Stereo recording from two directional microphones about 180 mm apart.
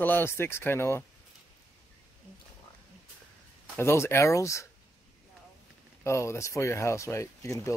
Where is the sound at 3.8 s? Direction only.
15° left (ahead or behind).